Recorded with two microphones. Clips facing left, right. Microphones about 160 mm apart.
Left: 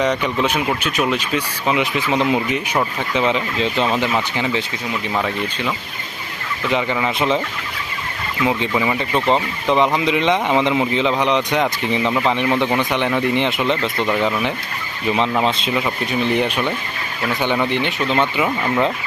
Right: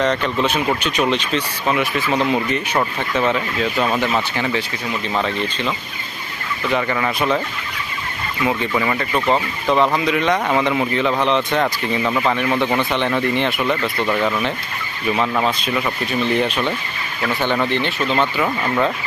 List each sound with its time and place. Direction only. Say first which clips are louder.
0.0 s speech: even; 10° left (ahead or behind)
3.8 s speech: even; 5° right (ahead or behind)
4.0 s speech: even; 15° left (ahead or behind)
8.4 s speech: left 1 dB; 15° left (ahead or behind)
15.4 s speech: left 1 dB; 25° left (ahead or behind)